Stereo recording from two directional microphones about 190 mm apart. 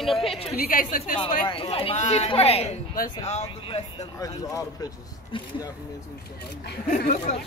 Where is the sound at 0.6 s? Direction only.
50° left (ahead or behind).